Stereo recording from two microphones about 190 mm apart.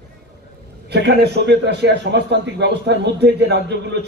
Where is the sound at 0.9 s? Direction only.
60° right (ahead or behind).